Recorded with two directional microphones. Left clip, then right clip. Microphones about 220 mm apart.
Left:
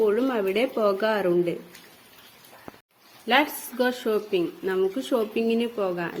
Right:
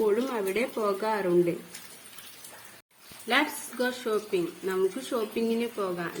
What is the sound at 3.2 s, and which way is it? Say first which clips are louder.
Speech: left 4 dB; 30° left (ahead or behind).